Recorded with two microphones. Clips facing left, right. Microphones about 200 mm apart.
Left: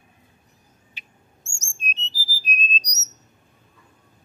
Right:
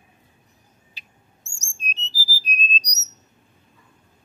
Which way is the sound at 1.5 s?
35° right (ahead or behind).